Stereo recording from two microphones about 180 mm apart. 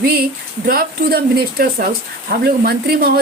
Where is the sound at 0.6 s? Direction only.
55° right (ahead or behind).